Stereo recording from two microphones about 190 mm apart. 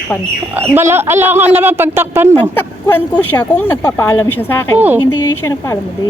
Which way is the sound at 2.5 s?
10° left (ahead or behind).